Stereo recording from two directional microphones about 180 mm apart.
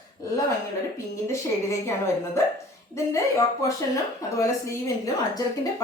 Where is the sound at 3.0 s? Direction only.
15° left (ahead or behind).